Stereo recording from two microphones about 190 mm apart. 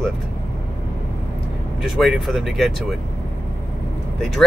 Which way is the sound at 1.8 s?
Centre (ahead or behind).